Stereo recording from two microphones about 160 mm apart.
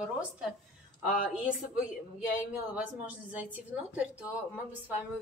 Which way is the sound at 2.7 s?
10° right (ahead or behind).